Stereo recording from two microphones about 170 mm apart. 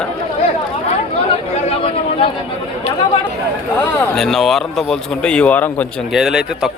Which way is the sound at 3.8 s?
Centre (ahead or behind).